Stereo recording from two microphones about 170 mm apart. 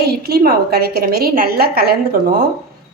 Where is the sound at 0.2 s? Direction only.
65° right (ahead or behind).